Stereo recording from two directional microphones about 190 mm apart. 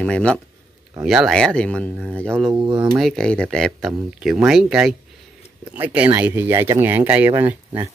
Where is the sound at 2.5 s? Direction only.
25° right (ahead or behind).